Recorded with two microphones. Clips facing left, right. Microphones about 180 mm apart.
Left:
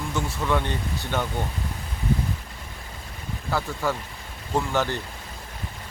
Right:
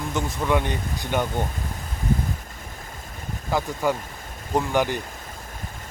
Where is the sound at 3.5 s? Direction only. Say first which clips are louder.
Right 3 dB; 15° right (ahead or behind).